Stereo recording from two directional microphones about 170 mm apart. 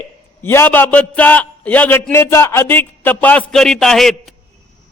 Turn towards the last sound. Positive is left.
turn(degrees=0)  # may be behind; listen again after turning